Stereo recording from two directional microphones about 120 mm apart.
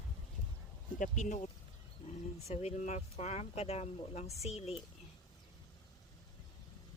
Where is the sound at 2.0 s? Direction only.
45° left (ahead or behind).